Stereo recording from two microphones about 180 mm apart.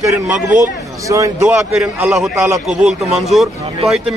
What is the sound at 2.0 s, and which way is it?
A man's voice, centre (ahead or behind).